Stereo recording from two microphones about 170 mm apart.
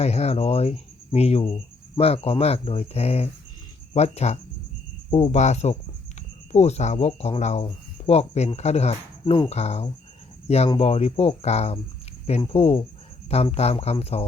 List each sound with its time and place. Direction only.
0.0 s speech: 40° left (ahead or behind)